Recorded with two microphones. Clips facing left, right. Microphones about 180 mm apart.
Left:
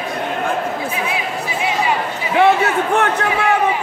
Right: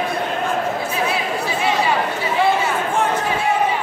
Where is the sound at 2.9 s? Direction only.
70° left (ahead or behind).